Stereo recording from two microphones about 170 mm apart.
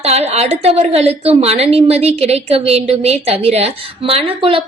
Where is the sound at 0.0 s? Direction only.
40° right (ahead or behind).